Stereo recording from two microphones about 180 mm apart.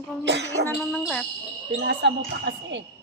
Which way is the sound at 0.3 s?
75° right (ahead or behind).